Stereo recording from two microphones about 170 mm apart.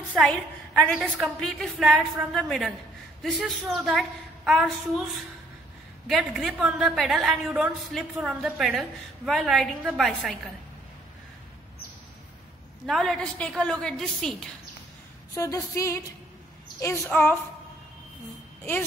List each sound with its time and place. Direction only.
0.1 s a woman's voice: centre (ahead or behind)
12.8 s a woman's voice: centre (ahead or behind)
15.3 s a sound: 20° left (ahead or behind)
16.8 s a woman's voice: 15° left (ahead or behind)